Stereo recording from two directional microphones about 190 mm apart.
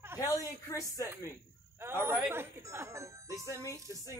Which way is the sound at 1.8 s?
10° right (ahead or behind).